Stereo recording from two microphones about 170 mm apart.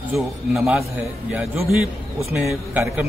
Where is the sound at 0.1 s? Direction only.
5° right (ahead or behind).